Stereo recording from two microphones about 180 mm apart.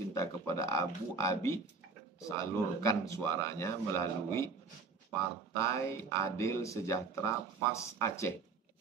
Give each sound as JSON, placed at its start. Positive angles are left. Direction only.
{"t": 0.1, "sound": "speech", "side_deg": 15}
{"t": 5.6, "sound": "speech", "side_deg": 15}